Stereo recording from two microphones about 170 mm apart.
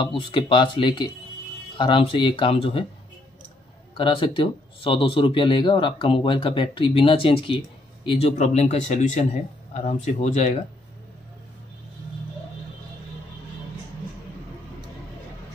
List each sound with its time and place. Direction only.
0.0 s speech: 30° left (ahead or behind)
3.9 s speech: 30° left (ahead or behind)